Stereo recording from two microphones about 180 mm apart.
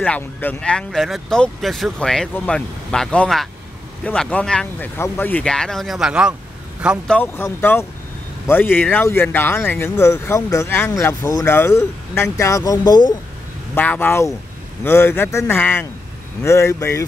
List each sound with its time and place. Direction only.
0.0 s speech: 10° left (ahead or behind)
7.2 s speech: 10° left (ahead or behind)